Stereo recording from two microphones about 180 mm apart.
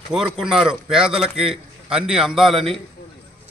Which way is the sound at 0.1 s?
Centre (ahead or behind).